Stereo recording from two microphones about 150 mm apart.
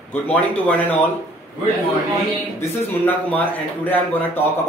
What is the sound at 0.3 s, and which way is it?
Speech, 10° left (ahead or behind).